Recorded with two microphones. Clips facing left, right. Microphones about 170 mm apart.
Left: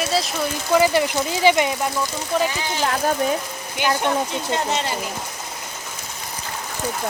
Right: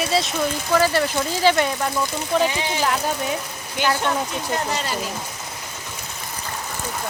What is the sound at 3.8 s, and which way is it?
Speech, 20° left (ahead or behind).